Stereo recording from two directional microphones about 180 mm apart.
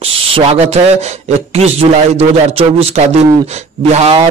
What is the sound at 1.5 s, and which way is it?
A man's voice, 35° right (ahead or behind).